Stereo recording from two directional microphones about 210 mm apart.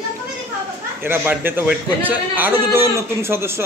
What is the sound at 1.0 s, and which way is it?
A man's voice, 10° right (ahead or behind).